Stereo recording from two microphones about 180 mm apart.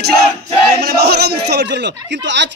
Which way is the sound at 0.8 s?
65° right (ahead or behind).